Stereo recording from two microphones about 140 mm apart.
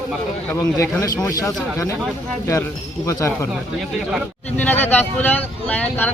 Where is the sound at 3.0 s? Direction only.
20° left (ahead or behind).